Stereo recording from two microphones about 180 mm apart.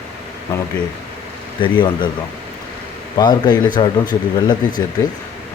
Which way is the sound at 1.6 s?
25° left (ahead or behind).